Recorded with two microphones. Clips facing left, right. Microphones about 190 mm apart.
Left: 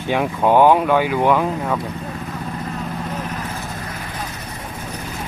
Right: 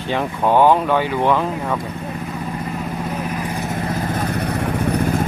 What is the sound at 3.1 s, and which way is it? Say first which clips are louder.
Vehicle: right 3 dB; 10° right (ahead or behind).